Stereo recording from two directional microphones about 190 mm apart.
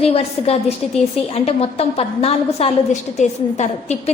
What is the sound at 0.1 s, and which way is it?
A woman's voice, 30° left (ahead or behind).